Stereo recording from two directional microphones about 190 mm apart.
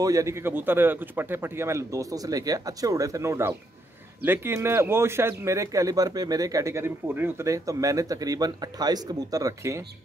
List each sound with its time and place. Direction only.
0.0 s a man's voice: 15° right (ahead or behind)